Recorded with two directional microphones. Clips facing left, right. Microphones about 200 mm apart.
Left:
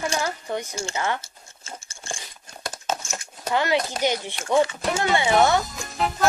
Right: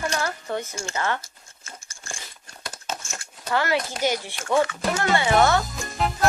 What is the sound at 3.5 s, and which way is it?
Speech, 20° left (ahead or behind).